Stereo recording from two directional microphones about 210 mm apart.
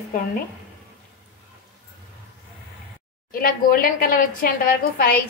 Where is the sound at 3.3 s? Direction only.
45° left (ahead or behind).